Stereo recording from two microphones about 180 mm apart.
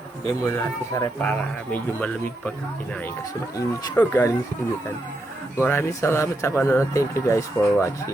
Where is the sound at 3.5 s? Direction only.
15° left (ahead or behind).